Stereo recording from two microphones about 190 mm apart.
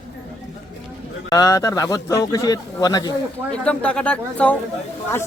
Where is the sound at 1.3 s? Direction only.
20° left (ahead or behind).